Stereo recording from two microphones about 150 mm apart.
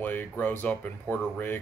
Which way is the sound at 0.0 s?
10° left (ahead or behind).